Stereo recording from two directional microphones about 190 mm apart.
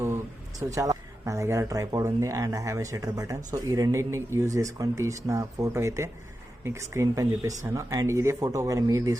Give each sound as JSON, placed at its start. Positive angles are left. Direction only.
{"t": 0.6, "sound": "speech", "side_deg": -15}